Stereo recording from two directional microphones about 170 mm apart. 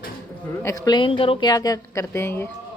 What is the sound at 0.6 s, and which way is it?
Speech, 20° left (ahead or behind).